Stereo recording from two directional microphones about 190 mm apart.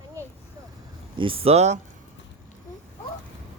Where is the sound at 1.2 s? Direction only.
30° right (ahead or behind).